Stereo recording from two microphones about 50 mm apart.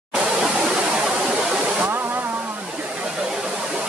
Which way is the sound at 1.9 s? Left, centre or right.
Right.